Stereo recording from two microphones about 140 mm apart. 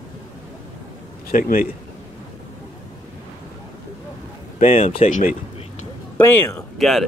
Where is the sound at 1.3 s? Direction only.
90° left.